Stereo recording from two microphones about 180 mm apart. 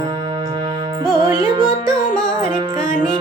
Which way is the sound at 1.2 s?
30° right (ahead or behind).